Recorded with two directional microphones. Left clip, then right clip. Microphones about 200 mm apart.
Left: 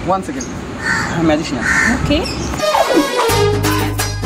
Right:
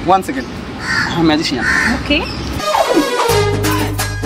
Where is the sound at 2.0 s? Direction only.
Centre (ahead or behind).